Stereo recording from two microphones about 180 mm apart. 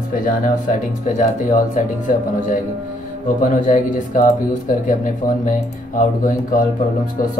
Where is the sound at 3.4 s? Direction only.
45° left (ahead or behind).